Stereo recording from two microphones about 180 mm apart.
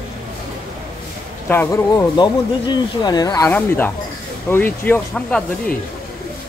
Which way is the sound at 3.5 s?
10° left (ahead or behind).